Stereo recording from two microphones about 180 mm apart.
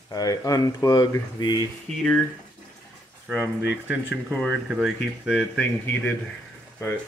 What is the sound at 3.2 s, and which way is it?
Speech, 10° right (ahead or behind).